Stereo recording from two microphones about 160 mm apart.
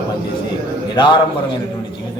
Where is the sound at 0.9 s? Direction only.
30° left (ahead or behind).